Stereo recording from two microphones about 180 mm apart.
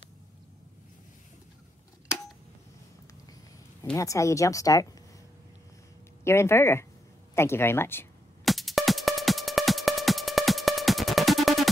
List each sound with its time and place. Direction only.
3.9 s speech: 15° left (ahead or behind)
6.2 s speech: 15° left (ahead or behind)
8.5 s music: centre (ahead or behind)